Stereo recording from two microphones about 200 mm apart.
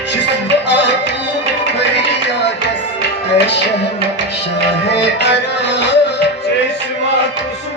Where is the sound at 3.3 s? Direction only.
60° left (ahead or behind).